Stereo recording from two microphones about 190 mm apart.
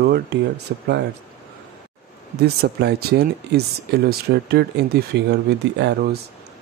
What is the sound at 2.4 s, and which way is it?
Speech, 60° right (ahead or behind).